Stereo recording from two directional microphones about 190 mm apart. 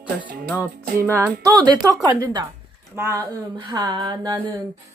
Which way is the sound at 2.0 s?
20° right (ahead or behind).